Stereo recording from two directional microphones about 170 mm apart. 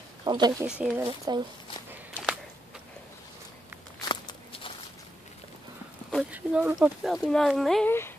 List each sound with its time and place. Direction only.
0.2 s speech: 25° right (ahead or behind)
0.7 s speech: 5° right (ahead or behind)
4.0 s a sound: 25° left (ahead or behind)
6.3 s speech: 10° right (ahead or behind)